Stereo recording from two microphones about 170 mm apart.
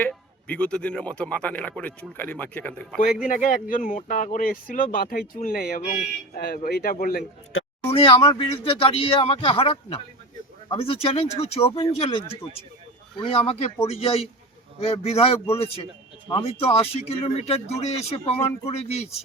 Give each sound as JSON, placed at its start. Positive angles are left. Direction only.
{"t": 0.0, "sound": "speech", "side_deg": 10}
{"t": 3.2, "sound": "speech", "side_deg": 50}
{"t": 7.9, "sound": "speech", "side_deg": 35}